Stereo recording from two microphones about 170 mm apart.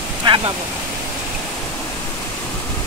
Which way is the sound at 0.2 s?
30° right (ahead or behind).